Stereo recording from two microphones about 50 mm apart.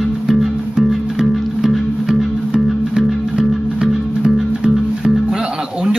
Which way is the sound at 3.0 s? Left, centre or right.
Centre.